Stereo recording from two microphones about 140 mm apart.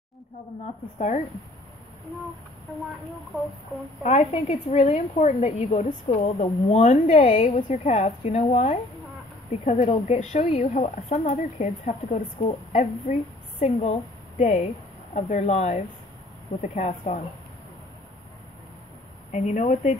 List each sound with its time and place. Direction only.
0.9 s speech: 55° left (ahead or behind)
4.0 s speech: 50° left (ahead or behind)
19.3 s speech: 60° left (ahead or behind)